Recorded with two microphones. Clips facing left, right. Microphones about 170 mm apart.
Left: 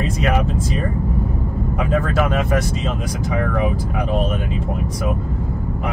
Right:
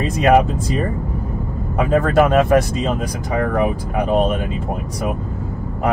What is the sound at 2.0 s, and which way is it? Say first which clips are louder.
Speech: right 7 dB; 55° right (ahead or behind).